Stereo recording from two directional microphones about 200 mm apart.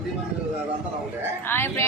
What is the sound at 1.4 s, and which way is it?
Speech, 10° left (ahead or behind).